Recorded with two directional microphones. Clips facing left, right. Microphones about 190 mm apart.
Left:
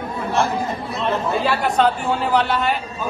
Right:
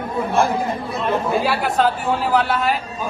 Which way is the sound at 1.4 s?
Centre (ahead or behind).